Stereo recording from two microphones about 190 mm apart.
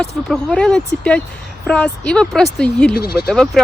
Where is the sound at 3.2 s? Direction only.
Centre (ahead or behind).